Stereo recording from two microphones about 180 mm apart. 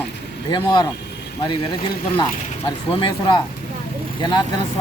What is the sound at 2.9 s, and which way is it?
Speech, 30° left (ahead or behind).